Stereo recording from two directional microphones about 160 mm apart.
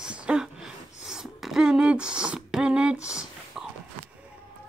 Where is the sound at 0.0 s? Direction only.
5° right (ahead or behind).